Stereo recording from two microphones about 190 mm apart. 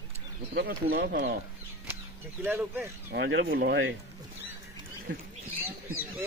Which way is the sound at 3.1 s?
65° right (ahead or behind).